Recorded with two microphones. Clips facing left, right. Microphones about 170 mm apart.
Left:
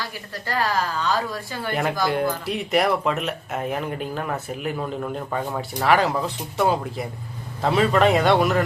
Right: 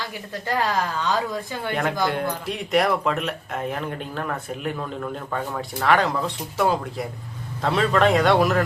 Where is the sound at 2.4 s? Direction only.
Centre (ahead or behind).